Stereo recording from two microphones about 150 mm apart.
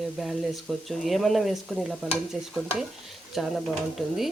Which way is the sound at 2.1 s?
5° right (ahead or behind).